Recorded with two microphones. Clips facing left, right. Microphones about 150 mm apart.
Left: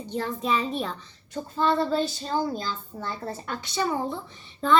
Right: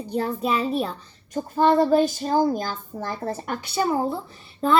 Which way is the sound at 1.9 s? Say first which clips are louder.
Right 7 dB; 15° right (ahead or behind).